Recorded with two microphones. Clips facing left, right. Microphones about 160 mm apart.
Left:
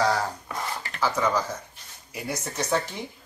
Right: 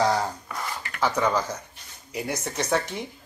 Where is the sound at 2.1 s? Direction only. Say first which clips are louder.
Right 2 dB; 20° right (ahead or behind).